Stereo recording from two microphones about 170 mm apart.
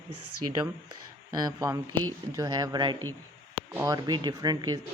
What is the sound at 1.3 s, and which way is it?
Speech, 20° right (ahead or behind).